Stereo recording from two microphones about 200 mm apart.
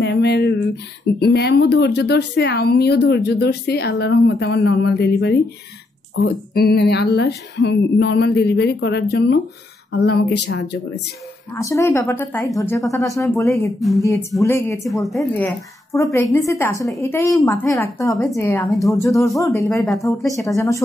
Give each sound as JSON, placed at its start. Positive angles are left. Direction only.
{"t": 0.0, "sound": "a sound", "side_deg": 55}
{"t": 1.2, "sound": "speech", "side_deg": 55}
{"t": 11.5, "sound": "a woman's voice", "side_deg": 15}
{"t": 13.5, "sound": "speech", "side_deg": 0}
{"t": 14.4, "sound": "a woman's voice", "side_deg": 15}
{"t": 14.8, "sound": "a woman's voice", "side_deg": 0}
{"t": 19.7, "sound": "speech", "side_deg": 0}
{"t": 20.2, "sound": "a woman's voice", "side_deg": 15}